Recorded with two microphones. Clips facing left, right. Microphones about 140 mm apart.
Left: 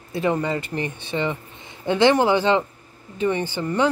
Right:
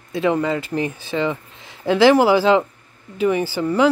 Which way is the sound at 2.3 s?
90° right.